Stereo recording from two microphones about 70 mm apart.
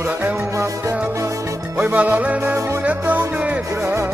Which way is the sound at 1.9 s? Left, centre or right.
Right.